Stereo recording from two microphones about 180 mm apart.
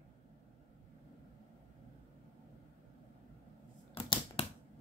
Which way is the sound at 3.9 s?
30° left (ahead or behind).